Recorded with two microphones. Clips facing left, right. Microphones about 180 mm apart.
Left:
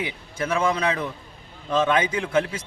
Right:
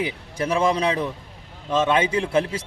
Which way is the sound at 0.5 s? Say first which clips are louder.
Right 2 dB; 35° right (ahead or behind).